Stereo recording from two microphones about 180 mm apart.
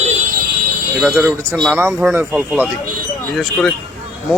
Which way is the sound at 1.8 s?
15° right (ahead or behind).